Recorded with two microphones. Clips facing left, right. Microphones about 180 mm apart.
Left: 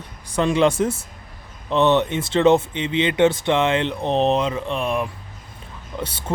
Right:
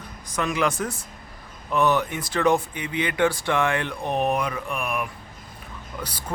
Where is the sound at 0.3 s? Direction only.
30° left (ahead or behind).